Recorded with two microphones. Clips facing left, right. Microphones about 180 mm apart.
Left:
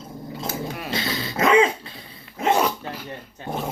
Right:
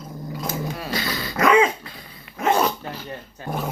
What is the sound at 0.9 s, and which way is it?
Dog, 25° left (ahead or behind).